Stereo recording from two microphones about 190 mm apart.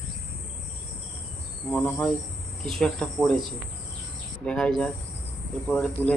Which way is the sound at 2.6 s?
5° left (ahead or behind).